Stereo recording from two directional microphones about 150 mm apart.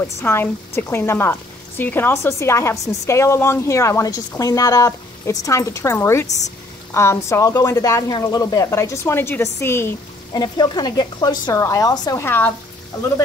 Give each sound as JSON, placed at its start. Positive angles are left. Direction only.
{"t": 0.2, "sound": "speech", "side_deg": 15}
{"t": 10.3, "sound": "speech", "side_deg": 30}